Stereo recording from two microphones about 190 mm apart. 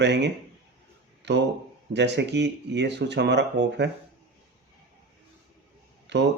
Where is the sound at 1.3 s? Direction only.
65° right (ahead or behind).